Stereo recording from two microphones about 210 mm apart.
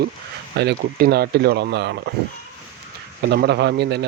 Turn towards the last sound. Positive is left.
turn(degrees=-50)  # may be behind; listen again after turning